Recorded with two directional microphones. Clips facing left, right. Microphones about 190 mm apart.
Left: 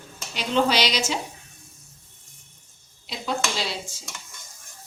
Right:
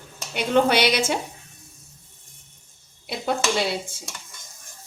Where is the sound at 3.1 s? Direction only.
55° right (ahead or behind).